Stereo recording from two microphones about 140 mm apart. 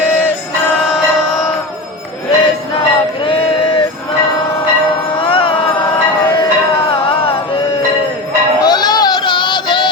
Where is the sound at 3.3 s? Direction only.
40° left (ahead or behind).